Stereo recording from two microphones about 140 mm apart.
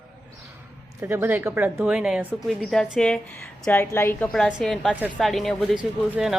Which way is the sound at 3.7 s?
15° left (ahead or behind).